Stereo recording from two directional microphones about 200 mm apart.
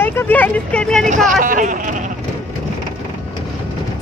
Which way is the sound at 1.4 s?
40° right (ahead or behind).